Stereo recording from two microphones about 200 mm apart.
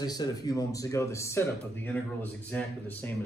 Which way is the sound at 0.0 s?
20° left (ahead or behind).